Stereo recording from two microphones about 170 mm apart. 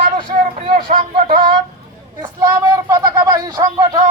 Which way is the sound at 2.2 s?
20° right (ahead or behind).